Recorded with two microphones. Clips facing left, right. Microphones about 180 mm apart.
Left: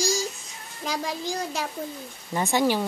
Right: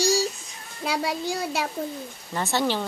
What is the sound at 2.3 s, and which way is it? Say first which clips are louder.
Speech: left 2 dB; 15° left (ahead or behind).